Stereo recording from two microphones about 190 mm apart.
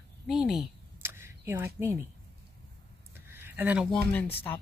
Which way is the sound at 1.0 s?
15° right (ahead or behind).